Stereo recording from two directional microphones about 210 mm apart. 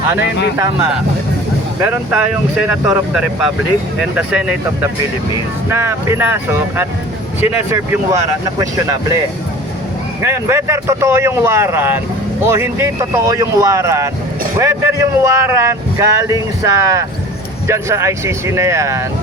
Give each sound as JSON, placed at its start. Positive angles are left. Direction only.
{"t": 0.2, "sound": "speech", "side_deg": 55}
{"t": 1.8, "sound": "speech", "side_deg": -5}
{"t": 5.7, "sound": "speech", "side_deg": -15}
{"t": 10.2, "sound": "speech", "side_deg": -15}